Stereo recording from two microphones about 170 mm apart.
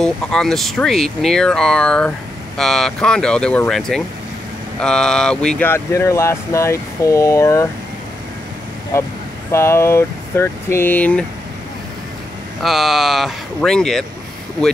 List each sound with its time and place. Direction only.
0.0 s speech: 5° left (ahead or behind)
8.9 s speech: 15° left (ahead or behind)
12.6 s speech: centre (ahead or behind)